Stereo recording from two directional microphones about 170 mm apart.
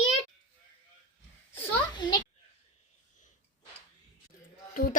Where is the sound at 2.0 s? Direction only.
25° left (ahead or behind).